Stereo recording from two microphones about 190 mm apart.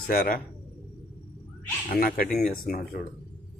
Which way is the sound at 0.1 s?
50° left (ahead or behind).